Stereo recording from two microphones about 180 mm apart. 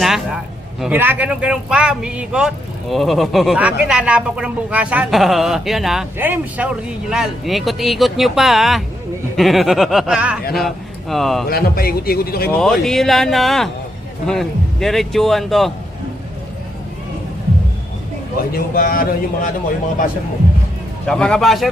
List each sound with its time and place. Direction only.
0.0 s a sound: centre (ahead or behind)
0.8 s speech: 10° right (ahead or behind)
11.4 s speech: 55° left (ahead or behind)
12.5 s speech: 5° left (ahead or behind)
18.5 s speech: 55° left (ahead or behind)
21.1 s speech: 5° left (ahead or behind)